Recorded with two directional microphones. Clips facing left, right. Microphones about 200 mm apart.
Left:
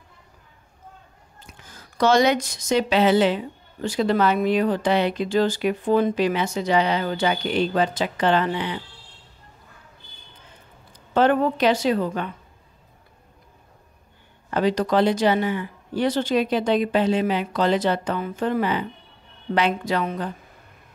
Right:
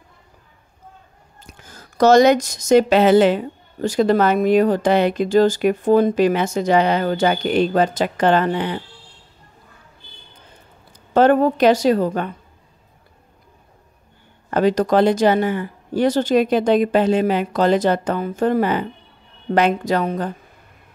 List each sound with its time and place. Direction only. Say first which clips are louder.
1.7 s speech: right 6 dB; 45° right (ahead or behind)
11.1 s speech: right 5 dB; 45° right (ahead or behind)
14.5 s speech: right 4 dB; 45° right (ahead or behind)